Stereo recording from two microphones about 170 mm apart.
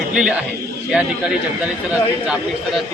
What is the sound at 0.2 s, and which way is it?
A man's voice, 5° right (ahead or behind).